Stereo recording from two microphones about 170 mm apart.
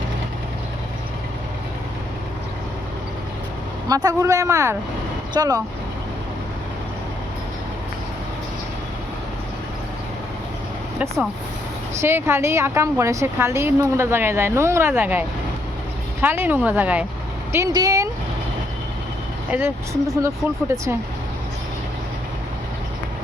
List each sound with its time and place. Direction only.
3.8 s a woman's voice: 20° right (ahead or behind)
11.9 s a woman's voice: 15° right (ahead or behind)
17.5 s speech: 20° right (ahead or behind)
19.5 s a woman's voice: 10° right (ahead or behind)